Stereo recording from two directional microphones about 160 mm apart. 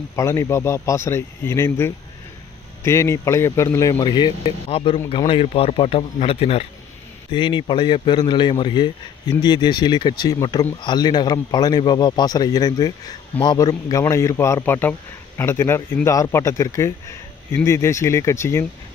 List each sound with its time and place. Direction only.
0.1 s speech: 20° left (ahead or behind)
4.6 s a man's voice: 40° left (ahead or behind); by 18.7 s 15° left (ahead or behind)